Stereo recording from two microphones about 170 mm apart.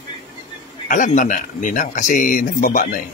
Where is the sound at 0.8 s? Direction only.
50° left (ahead or behind).